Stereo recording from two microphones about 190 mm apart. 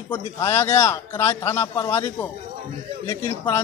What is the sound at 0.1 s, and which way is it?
Speech, 15° left (ahead or behind).